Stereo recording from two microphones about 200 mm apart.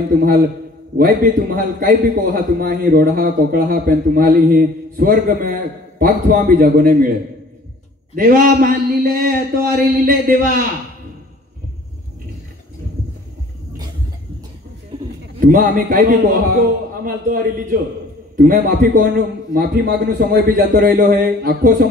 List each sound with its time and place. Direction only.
0.9 s a man's voice: 45° right (ahead or behind)
8.2 s a man's voice: 45° right (ahead or behind)
15.4 s a man's voice: 50° right (ahead or behind)